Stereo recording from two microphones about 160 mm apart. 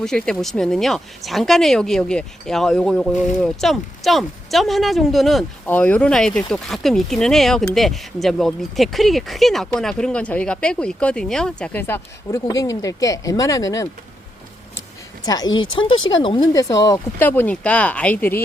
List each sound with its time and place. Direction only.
0.0 s speech: 5° left (ahead or behind); by 13.8 s 20° left (ahead or behind)
15.2 s speech: 25° left (ahead or behind)